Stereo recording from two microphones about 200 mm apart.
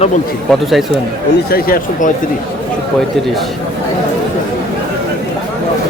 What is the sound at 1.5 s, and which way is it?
Speech, 45° left (ahead or behind).